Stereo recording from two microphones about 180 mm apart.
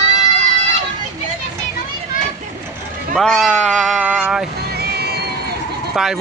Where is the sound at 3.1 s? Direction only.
Centre (ahead or behind).